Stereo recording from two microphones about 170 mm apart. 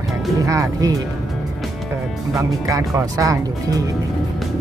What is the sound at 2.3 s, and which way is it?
Speech, 20° right (ahead or behind).